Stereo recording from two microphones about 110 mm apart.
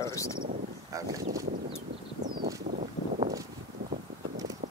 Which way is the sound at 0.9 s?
30° right (ahead or behind).